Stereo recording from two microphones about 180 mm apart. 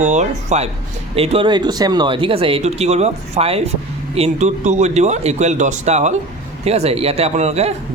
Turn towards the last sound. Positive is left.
turn(degrees=-35)  # may be behind; listen again after turning